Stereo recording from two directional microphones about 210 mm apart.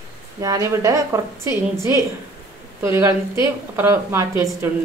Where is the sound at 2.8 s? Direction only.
15° right (ahead or behind).